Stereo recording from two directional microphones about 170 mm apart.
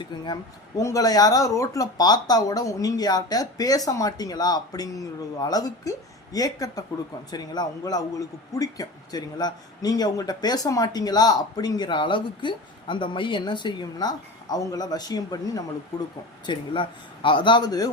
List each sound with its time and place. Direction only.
0.8 s speech: 20° left (ahead or behind)